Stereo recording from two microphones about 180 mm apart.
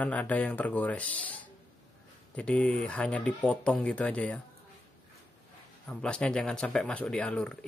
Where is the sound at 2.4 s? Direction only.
5° left (ahead or behind).